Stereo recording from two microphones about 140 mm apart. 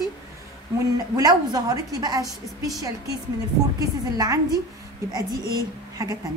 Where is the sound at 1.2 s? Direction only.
30° right (ahead or behind).